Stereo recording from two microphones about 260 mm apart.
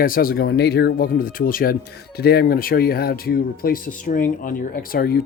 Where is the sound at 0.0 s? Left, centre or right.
Left.